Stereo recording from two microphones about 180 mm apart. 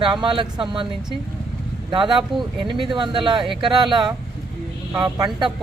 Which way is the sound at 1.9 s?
25° right (ahead or behind).